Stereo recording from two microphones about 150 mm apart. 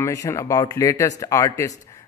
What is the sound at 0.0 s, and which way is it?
Speech, 20° left (ahead or behind).